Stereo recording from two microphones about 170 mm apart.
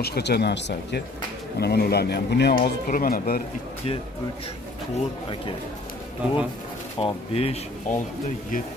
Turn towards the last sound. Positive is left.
turn(degrees=35)  # may be behind; listen again after turning